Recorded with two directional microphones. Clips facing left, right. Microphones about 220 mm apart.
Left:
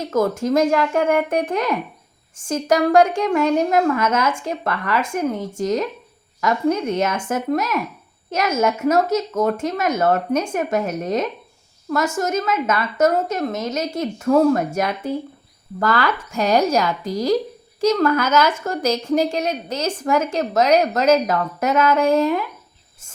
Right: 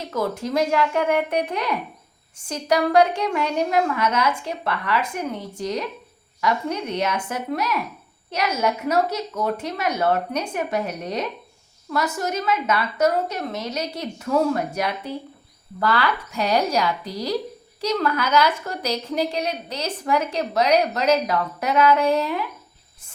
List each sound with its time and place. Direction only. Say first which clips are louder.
0.1 s a woman's voice: left 6 dB; 45° left (ahead or behind)